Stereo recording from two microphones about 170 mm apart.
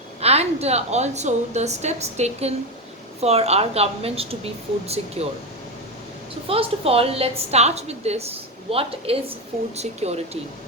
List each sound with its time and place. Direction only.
0.2 s a woman's voice: 40° right (ahead or behind)
6.5 s a woman's voice: 35° right (ahead or behind)